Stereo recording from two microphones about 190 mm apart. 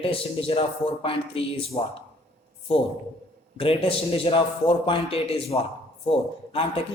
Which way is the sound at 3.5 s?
30° left (ahead or behind).